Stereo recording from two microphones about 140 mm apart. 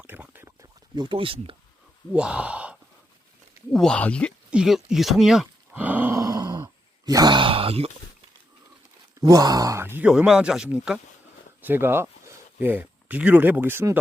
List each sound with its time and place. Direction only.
0.0 s a sound: 10° right (ahead or behind)
0.9 s speech: 35° right (ahead or behind)
2.1 s speech: 10° right (ahead or behind)
3.7 s speech: 5° left (ahead or behind)
4.5 s groan: 5° right (ahead or behind); by 6.6 s 25° right (ahead or behind)
7.0 s speech: 25° right (ahead or behind); by 7.9 s 45° right (ahead or behind)
9.2 s speech: 25° right (ahead or behind)
10.1 s speech: 5° right (ahead or behind)
11.6 s speech: 15° right (ahead or behind)